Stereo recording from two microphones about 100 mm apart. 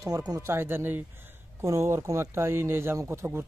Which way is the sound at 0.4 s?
25° right (ahead or behind).